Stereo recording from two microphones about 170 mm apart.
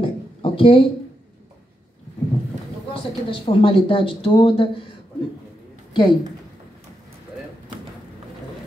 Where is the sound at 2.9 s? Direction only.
35° left (ahead or behind).